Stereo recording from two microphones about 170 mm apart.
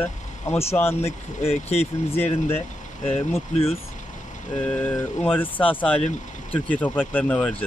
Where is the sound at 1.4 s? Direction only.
40° left (ahead or behind).